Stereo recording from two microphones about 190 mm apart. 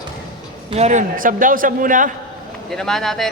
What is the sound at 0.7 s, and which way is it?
A man's voice, 35° right (ahead or behind).